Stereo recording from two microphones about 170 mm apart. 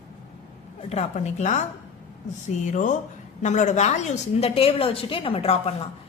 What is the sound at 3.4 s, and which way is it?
A woman's voice, 45° left (ahead or behind).